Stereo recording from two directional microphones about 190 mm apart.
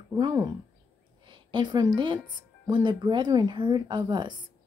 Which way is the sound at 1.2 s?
25° right (ahead or behind).